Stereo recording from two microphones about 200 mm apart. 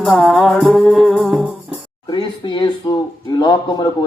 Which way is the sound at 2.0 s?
25° left (ahead or behind).